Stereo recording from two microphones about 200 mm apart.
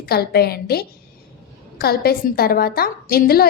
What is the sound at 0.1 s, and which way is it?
A woman's voice, 50° left (ahead or behind).